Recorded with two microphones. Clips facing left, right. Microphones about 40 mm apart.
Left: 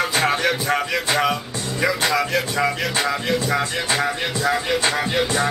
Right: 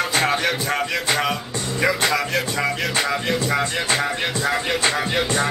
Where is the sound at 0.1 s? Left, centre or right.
Centre.